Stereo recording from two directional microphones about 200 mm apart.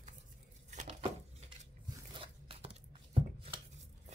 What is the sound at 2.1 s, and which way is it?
Biting, 30° right (ahead or behind).